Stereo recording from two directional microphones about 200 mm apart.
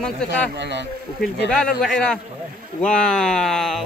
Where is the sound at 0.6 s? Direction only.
60° right (ahead or behind).